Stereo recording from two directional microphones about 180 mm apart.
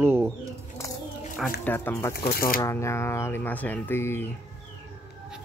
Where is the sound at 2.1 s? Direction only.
55° left (ahead or behind).